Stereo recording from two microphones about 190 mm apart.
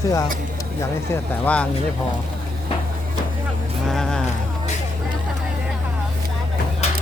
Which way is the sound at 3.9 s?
Centre (ahead or behind).